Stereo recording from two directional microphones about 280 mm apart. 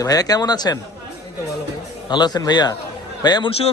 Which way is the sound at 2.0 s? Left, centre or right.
Centre.